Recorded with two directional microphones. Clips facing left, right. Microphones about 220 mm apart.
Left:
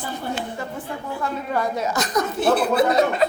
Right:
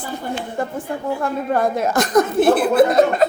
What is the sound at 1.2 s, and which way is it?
Speech, 50° right (ahead or behind).